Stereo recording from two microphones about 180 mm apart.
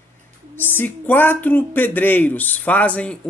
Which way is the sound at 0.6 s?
10° left (ahead or behind).